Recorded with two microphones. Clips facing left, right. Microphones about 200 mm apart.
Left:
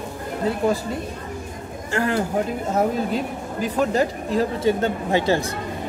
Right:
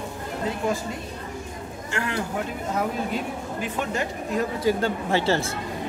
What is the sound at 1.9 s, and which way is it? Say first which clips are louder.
A man's voice: left 7 dB; 35° left (ahead or behind).